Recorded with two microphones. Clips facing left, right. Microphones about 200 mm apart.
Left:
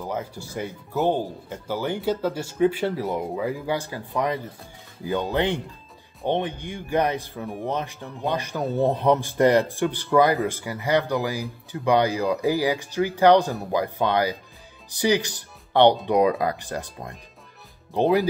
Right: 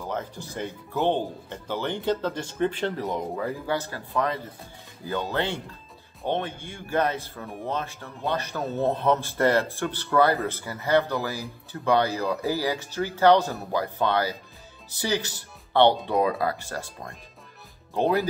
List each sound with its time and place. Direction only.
0.0 s speech: 10° left (ahead or behind)